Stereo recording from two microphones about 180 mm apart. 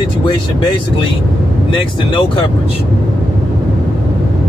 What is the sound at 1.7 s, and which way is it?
Speech, 30° left (ahead or behind).